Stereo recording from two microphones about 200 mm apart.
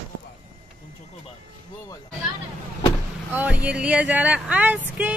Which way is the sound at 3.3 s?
10° right (ahead or behind).